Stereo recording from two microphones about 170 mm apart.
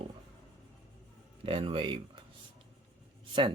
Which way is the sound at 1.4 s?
35° right (ahead or behind).